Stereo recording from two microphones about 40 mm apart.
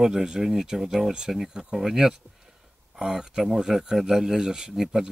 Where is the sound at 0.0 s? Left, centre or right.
Centre.